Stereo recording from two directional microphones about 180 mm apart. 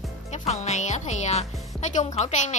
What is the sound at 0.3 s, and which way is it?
A woman's voice, 40° left (ahead or behind).